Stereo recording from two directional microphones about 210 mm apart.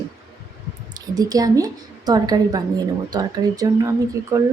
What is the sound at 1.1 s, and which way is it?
Speech, 15° right (ahead or behind).